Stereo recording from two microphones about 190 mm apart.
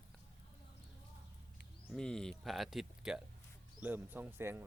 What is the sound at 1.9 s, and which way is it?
Speech, 5° left (ahead or behind).